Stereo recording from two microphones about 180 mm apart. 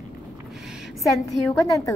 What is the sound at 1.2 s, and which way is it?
Speech, 20° left (ahead or behind).